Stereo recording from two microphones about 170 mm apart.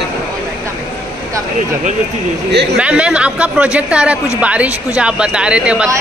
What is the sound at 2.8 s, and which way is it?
Speech, 5° right (ahead or behind).